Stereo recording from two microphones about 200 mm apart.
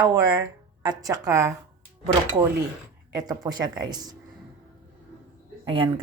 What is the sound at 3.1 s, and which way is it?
Speech, 20° right (ahead or behind).